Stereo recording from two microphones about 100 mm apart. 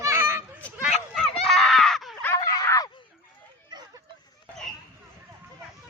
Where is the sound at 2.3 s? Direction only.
35° left (ahead or behind).